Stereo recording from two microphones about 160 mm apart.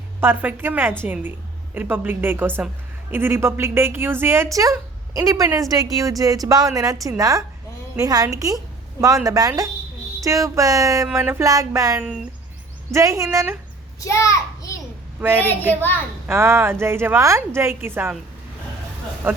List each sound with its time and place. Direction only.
0.2 s a woman's voice: 15° right (ahead or behind)
14.0 s a child's voice: 20° left (ahead or behind)
15.2 s a woman's voice: 15° right (ahead or behind)
19.2 s a woman's voice: 15° right (ahead or behind)